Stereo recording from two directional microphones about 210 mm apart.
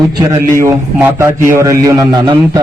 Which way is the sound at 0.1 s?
20° right (ahead or behind).